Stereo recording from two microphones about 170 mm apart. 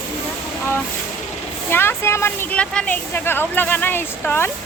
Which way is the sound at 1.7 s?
15° left (ahead or behind).